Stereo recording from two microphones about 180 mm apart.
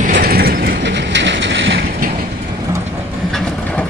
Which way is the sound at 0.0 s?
50° right (ahead or behind).